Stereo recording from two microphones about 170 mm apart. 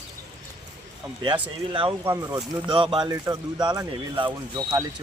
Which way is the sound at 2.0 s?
15° right (ahead or behind).